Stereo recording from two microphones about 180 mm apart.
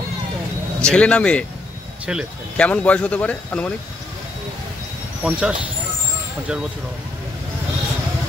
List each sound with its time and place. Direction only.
0.8 s speech: 5° left (ahead or behind)
5.2 s speech: 5° right (ahead or behind)